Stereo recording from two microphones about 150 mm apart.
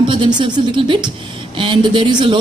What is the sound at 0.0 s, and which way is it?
Speech, 35° right (ahead or behind).